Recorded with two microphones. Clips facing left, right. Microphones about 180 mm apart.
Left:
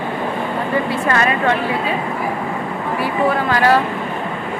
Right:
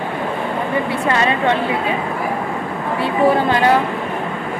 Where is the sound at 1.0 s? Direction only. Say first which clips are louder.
Right 1 dB; 20° right (ahead or behind).